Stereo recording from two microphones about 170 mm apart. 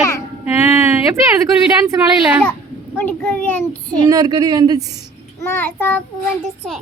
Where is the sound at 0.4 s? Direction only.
10° right (ahead or behind).